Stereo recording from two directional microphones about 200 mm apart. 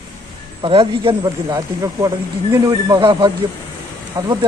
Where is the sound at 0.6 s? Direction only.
25° right (ahead or behind).